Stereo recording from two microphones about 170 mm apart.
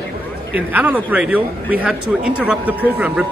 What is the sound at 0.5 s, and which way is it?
A man's voice, 10° right (ahead or behind).